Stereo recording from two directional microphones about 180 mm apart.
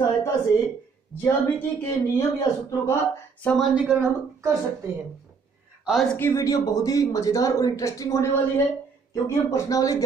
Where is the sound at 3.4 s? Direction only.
Centre (ahead or behind).